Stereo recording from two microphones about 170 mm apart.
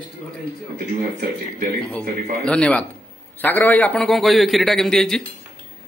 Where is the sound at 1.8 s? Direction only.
5° left (ahead or behind).